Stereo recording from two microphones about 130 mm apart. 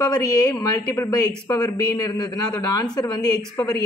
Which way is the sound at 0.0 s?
30° left (ahead or behind).